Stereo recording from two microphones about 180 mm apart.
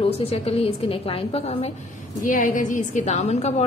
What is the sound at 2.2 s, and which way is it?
A woman's voice, 45° left (ahead or behind).